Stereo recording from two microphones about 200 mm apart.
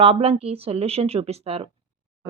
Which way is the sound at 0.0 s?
30° right (ahead or behind).